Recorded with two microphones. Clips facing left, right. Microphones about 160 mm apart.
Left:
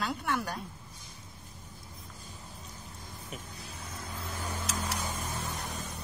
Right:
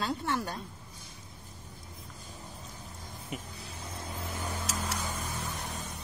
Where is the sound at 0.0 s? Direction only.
25° right (ahead or behind).